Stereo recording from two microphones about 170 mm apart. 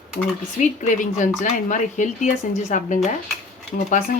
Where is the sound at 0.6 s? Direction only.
45° left (ahead or behind).